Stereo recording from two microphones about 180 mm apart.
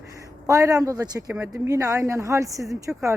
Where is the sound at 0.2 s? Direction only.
20° right (ahead or behind).